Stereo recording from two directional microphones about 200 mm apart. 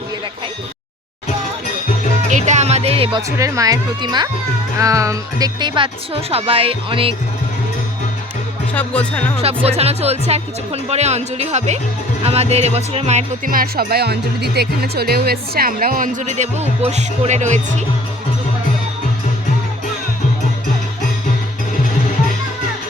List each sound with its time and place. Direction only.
2.3 s music: 35° right (ahead or behind)
3.2 s speech: 15° right (ahead or behind)
8.7 s speech: 5° left (ahead or behind)
9.6 s speech: 30° right (ahead or behind)